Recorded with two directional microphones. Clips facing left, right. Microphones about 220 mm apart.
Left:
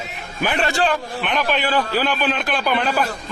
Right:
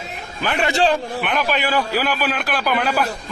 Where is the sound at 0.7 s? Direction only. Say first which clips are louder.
Right 6 dB; 25° right (ahead or behind).